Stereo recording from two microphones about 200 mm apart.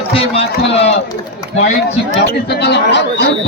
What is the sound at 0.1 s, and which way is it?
Speech, 30° left (ahead or behind).